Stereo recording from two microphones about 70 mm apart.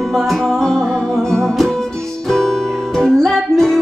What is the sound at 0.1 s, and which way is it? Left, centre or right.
Music, centre.